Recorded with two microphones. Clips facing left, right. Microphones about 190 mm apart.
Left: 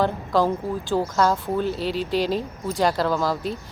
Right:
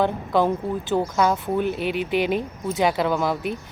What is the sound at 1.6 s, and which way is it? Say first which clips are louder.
Speech: right 1 dB; 55° right (ahead or behind).